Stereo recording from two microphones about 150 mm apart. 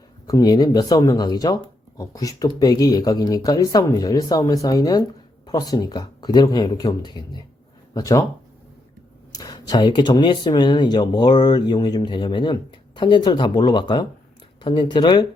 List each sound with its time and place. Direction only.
0.3 s speech: 25° left (ahead or behind)
9.3 s speech: 25° left (ahead or behind)